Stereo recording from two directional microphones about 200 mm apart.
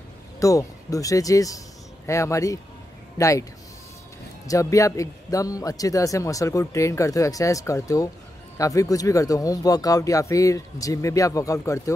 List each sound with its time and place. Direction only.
0.4 s a man's voice: 15° left (ahead or behind)
4.5 s a man's voice: 15° left (ahead or behind)